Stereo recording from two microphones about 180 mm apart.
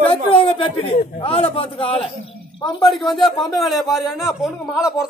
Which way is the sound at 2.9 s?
Centre (ahead or behind).